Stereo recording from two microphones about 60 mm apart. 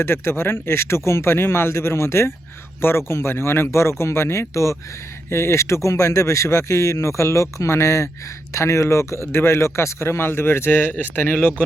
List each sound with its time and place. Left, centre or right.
0.0 s speech: left
10.7 s speech: left